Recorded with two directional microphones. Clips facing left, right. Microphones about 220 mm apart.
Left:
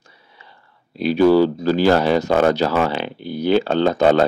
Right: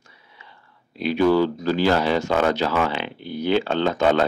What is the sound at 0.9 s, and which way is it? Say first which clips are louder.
Speech: left 5 dB; 35° left (ahead or behind).